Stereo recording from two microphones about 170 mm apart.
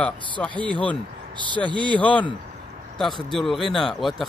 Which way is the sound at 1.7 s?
30° right (ahead or behind).